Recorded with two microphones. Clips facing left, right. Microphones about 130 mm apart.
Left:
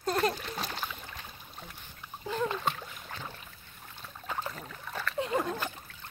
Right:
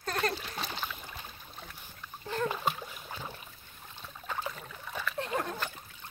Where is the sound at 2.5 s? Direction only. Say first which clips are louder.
Even; 10° right (ahead or behind).